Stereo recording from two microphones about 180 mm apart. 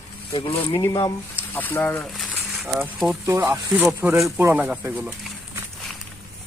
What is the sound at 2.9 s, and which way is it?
Speech, centre (ahead or behind).